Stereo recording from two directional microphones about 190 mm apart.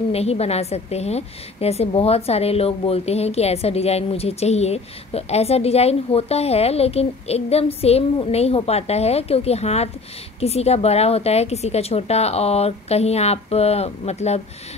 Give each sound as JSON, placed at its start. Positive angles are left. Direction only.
{"t": 0.1, "sound": "a woman's voice", "side_deg": 35}